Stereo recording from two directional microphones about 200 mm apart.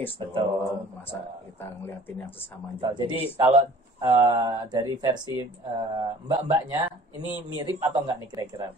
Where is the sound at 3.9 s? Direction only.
20° right (ahead or behind).